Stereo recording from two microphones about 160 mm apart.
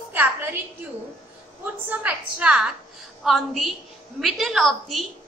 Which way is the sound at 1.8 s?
10° right (ahead or behind).